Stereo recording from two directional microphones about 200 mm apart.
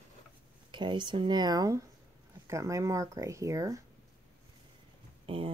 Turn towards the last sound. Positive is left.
turn(degrees=-25)  # may be behind; listen again after turning